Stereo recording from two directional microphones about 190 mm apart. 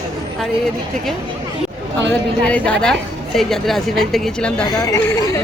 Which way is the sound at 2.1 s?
5° left (ahead or behind).